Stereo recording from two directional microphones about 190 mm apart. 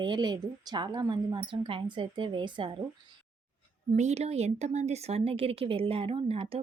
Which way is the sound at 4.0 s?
35° right (ahead or behind).